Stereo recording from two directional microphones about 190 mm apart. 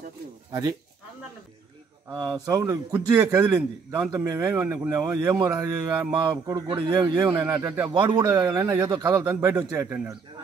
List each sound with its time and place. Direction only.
0.5 s speech: 20° right (ahead or behind)
2.0 s a man's voice: 20° right (ahead or behind)
7.9 s a man's voice: 25° right (ahead or behind)